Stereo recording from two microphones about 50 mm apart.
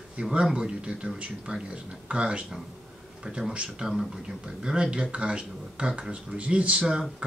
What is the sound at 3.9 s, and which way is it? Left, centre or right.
Speech, centre.